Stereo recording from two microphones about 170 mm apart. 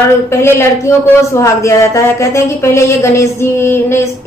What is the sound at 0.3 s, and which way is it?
A man's voice, 15° left (ahead or behind).